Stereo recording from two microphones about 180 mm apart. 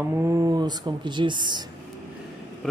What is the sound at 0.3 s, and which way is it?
Speech, 20° right (ahead or behind).